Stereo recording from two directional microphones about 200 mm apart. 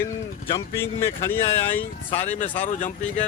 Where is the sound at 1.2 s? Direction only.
10° left (ahead or behind).